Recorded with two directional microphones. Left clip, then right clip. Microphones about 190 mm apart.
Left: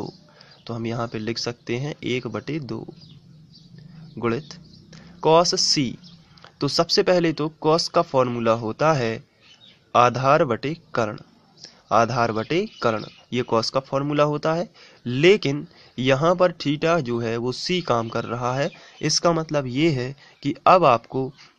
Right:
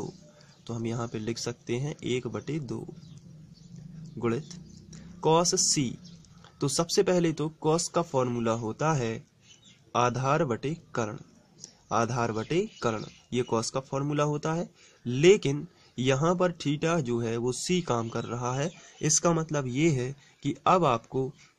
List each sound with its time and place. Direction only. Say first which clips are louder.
0.7 s a man's voice: left 6 dB; 10° left (ahead or behind)
4.2 s a man's voice: left 5 dB; 10° left (ahead or behind)